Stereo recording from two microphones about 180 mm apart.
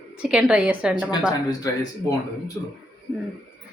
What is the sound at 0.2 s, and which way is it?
Speech, 5° right (ahead or behind).